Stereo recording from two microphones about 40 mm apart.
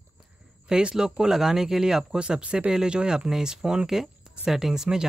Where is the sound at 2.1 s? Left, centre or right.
Right.